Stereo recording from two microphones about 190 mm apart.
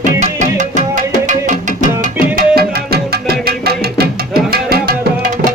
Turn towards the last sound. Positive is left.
turn(degrees=-50)  # may be behind; listen again after turning